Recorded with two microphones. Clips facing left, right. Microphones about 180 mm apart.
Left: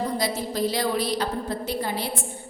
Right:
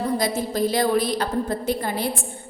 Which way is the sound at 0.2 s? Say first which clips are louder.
Right 3 dB; 50° right (ahead or behind).